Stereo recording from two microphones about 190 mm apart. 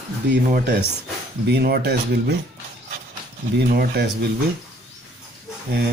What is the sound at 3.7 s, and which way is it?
Speech, 55° right (ahead or behind).